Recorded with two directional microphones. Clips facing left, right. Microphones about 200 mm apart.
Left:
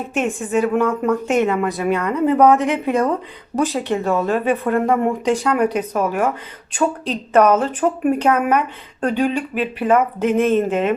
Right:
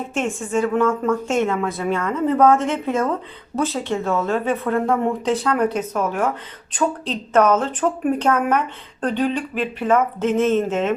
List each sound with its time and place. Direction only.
0.1 s a woman's voice: 15° left (ahead or behind)